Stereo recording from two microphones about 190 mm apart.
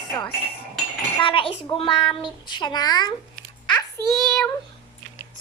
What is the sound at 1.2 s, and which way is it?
A child's voice, 25° left (ahead or behind).